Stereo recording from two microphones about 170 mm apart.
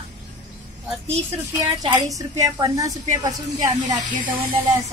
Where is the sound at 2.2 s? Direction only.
20° right (ahead or behind).